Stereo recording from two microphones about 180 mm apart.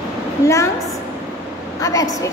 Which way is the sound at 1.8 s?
20° left (ahead or behind).